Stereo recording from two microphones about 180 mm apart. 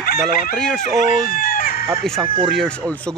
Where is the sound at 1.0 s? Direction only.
50° left (ahead or behind).